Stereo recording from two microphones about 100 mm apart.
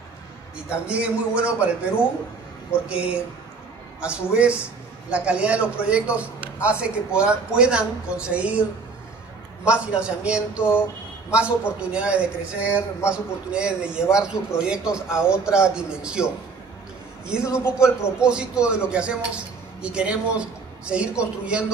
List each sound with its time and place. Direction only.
0.7 s speech: 10° right (ahead or behind)
9.7 s speech: 10° right (ahead or behind)
10.6 s a sound: 25° left (ahead or behind)
11.9 s speech: 10° right (ahead or behind)
17.3 s speech: 10° right (ahead or behind)